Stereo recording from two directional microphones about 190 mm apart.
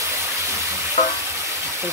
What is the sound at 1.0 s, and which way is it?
Frying, 35° left (ahead or behind).